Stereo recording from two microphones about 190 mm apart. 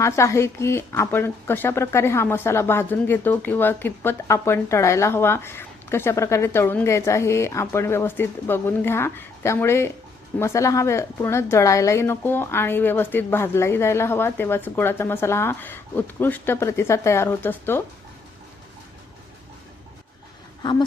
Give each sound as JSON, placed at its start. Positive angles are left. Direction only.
{"t": 0.0, "sound": "speech", "side_deg": 15}
{"t": 20.6, "sound": "speech", "side_deg": 25}